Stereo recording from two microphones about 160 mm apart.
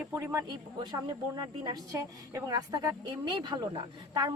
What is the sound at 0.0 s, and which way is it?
Speech, 15° right (ahead or behind).